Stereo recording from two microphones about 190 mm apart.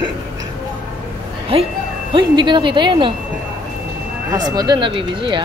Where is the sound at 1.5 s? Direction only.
30° right (ahead or behind).